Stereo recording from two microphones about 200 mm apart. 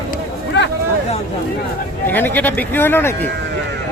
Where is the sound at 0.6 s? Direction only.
60° left (ahead or behind).